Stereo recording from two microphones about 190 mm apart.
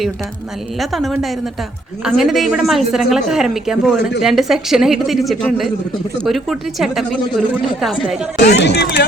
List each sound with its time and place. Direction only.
0.8 s a woman's voice: centre (ahead or behind)
8.4 s speech: 65° left (ahead or behind)